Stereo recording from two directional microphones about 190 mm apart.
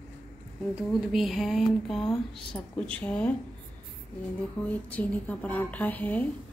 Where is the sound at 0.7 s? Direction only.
Centre (ahead or behind).